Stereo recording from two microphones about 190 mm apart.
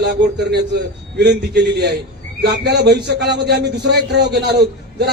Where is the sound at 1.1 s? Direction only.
60° right (ahead or behind).